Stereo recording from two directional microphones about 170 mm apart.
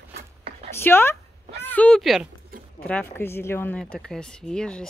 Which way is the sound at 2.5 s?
60° right (ahead or behind).